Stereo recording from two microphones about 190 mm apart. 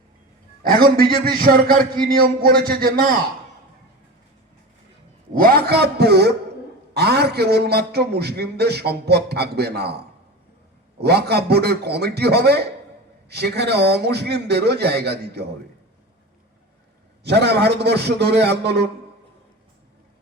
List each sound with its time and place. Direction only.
0.6 s a man's voice: 50° right (ahead or behind)
5.3 s a man's voice: 50° right (ahead or behind)
11.0 s a man's voice: 60° right (ahead or behind)
17.2 s a man's voice: 60° right (ahead or behind)